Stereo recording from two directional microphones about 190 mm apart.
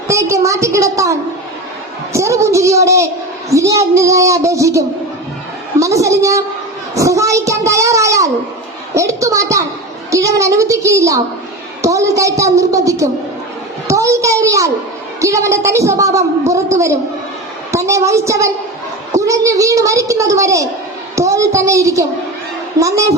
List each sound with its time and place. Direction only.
0.1 s a man's voice: 15° right (ahead or behind)
2.1 s a man's voice: 15° right (ahead or behind)
6.9 s a sound: 15° right (ahead or behind)
9.0 s a man's voice: 15° right (ahead or behind)